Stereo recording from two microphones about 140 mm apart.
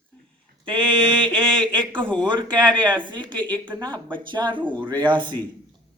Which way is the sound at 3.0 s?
35° right (ahead or behind).